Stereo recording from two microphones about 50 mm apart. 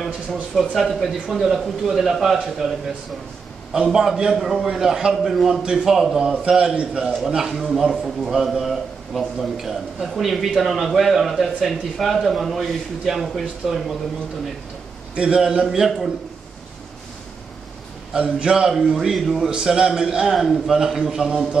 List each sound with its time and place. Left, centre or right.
0.6 s a man's voice: centre
3.7 s a man's voice: centre
7.2 s a man's voice: centre
15.1 s a man's voice: centre
18.1 s a man's voice: centre
19.5 s a man's voice: centre
20.3 s a man's voice: centre